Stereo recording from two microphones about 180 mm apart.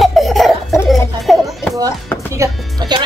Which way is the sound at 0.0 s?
Centre (ahead or behind).